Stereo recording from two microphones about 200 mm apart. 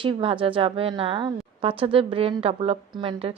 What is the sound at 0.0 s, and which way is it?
A woman's voice, 25° right (ahead or behind).